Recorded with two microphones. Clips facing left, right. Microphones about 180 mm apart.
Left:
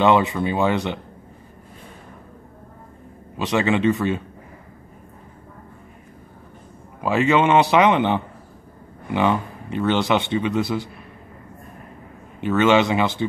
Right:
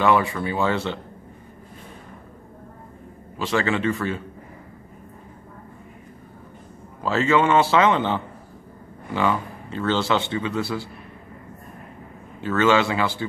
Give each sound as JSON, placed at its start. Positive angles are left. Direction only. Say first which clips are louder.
{"t": 0.0, "sound": "speech", "louder": "left 3 dB", "side_deg": 20}
{"t": 3.3, "sound": "speech", "louder": "left 3 dB", "side_deg": 20}
{"t": 7.0, "sound": "a man's voice", "louder": "left 2 dB", "side_deg": 15}
{"t": 12.4, "sound": "speech", "louder": "left 3 dB", "side_deg": 20}